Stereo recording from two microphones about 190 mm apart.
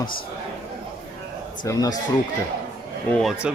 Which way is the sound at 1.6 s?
20° left (ahead or behind).